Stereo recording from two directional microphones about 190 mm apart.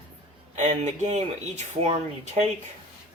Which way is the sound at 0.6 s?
40° right (ahead or behind).